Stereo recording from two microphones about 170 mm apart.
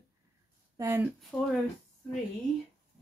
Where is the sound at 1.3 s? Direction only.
Centre (ahead or behind).